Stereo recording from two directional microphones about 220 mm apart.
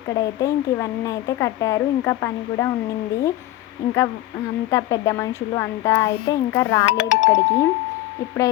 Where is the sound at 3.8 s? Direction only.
15° left (ahead or behind).